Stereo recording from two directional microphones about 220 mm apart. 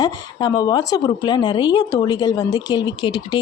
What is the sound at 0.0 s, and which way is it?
A woman's voice, 20° left (ahead or behind).